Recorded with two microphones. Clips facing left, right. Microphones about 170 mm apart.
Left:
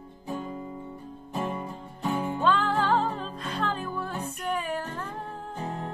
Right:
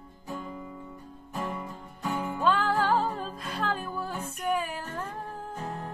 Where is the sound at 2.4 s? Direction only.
10° right (ahead or behind).